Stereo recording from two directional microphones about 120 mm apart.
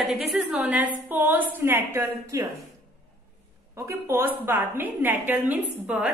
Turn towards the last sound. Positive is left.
turn(degrees=-10)  # may be behind; listen again after turning